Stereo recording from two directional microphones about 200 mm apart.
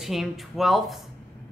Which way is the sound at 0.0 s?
Centre (ahead or behind).